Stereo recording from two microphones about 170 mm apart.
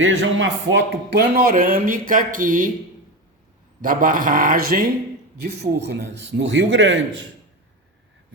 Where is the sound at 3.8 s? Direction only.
55° right (ahead or behind).